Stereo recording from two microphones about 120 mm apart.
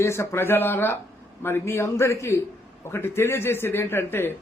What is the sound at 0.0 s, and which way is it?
A man's voice, 20° left (ahead or behind).